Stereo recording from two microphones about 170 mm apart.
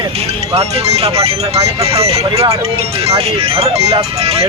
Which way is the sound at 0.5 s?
40° right (ahead or behind).